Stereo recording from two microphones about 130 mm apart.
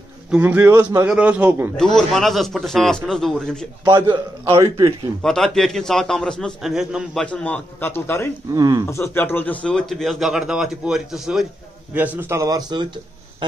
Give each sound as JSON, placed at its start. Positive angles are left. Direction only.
{"t": 0.3, "sound": "a man's voice", "side_deg": -15}
{"t": 2.0, "sound": "speech", "side_deg": 0}
{"t": 3.8, "sound": "a man's voice", "side_deg": -35}
{"t": 4.5, "sound": "a man's voice", "side_deg": -25}
{"t": 5.2, "sound": "speech", "side_deg": 5}
{"t": 7.2, "sound": "a man's voice", "side_deg": 10}
{"t": 8.5, "sound": "a man's voice", "side_deg": -30}
{"t": 8.8, "sound": "a man's voice", "side_deg": 20}